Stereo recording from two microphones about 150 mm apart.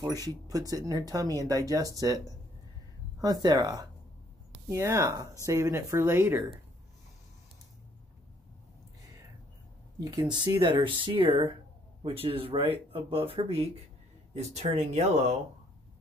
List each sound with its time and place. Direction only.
0.0 s speech: 25° right (ahead or behind)
10.3 s speech: 30° right (ahead or behind); by 15.3 s 45° right (ahead or behind)